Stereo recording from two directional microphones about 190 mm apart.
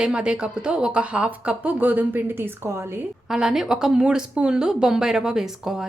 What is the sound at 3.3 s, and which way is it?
A woman's voice, centre (ahead or behind).